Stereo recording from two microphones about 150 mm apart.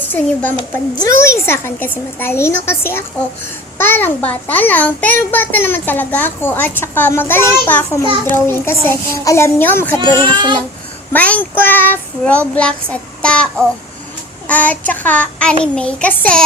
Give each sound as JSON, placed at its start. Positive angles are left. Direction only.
{"t": 0.1, "sound": "a child's voice", "side_deg": 15}
{"t": 10.3, "sound": "speech", "side_deg": -30}
{"t": 11.1, "sound": "a child's voice", "side_deg": 10}